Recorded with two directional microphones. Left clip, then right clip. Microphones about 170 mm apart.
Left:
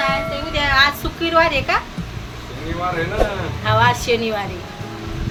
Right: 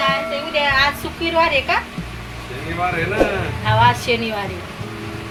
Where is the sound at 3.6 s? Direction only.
15° left (ahead or behind).